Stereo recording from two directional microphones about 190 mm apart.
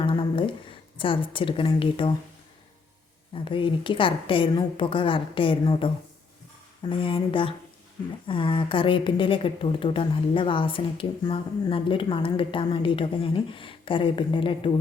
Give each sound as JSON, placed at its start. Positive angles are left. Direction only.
{"t": 0.0, "sound": "a woman's voice", "side_deg": 25}
{"t": 3.3, "sound": "a woman's voice", "side_deg": 25}